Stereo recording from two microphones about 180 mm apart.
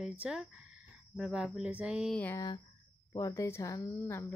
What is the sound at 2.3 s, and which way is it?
Speech, 25° left (ahead or behind).